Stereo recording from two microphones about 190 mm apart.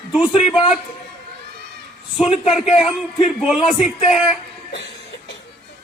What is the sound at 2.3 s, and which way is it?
Speech, 35° left (ahead or behind).